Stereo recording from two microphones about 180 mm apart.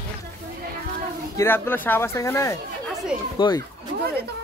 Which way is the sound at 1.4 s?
10° left (ahead or behind).